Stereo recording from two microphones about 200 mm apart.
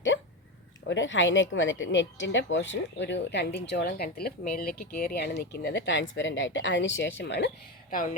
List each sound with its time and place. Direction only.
0.9 s speech: 70° left (ahead or behind); by 8.1 s 45° left (ahead or behind)